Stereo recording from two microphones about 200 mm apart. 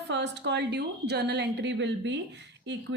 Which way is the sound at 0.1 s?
60° right (ahead or behind).